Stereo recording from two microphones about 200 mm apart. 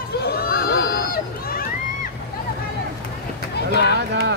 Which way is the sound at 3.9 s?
60° right (ahead or behind).